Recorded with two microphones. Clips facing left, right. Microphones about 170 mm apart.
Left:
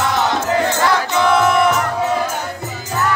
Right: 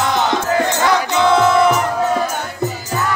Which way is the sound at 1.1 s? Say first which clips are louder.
Right 2 dB; 20° right (ahead or behind).